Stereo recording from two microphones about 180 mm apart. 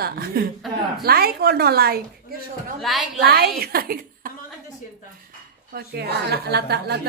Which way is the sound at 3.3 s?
60° right (ahead or behind).